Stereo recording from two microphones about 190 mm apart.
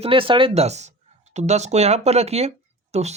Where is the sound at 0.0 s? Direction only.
30° right (ahead or behind).